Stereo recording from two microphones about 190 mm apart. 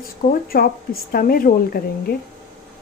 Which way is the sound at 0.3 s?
50° left (ahead or behind).